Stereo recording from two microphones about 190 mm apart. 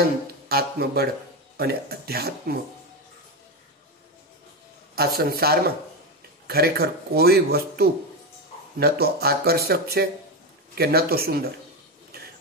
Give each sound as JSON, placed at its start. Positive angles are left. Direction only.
{"t": 0.5, "sound": "speech", "side_deg": -55}
{"t": 4.9, "sound": "speech", "side_deg": -55}